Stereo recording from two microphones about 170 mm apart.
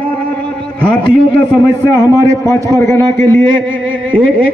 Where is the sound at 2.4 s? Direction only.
20° left (ahead or behind).